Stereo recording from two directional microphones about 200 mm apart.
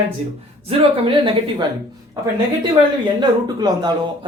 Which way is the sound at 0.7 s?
25° right (ahead or behind).